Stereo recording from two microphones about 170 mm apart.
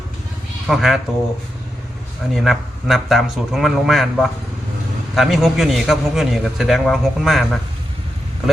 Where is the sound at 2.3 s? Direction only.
Centre (ahead or behind).